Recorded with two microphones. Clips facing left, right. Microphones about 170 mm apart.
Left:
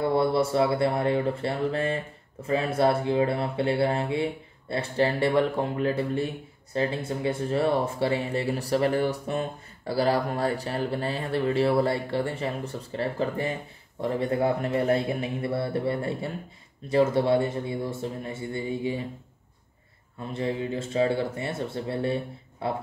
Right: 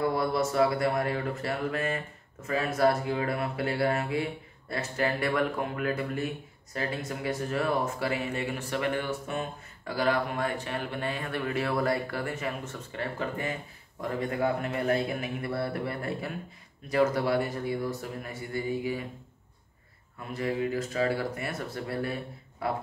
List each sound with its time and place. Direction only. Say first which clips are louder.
0.0 s speech: left 4 dB; 30° left (ahead or behind)
20.3 s speech: even; 25° left (ahead or behind)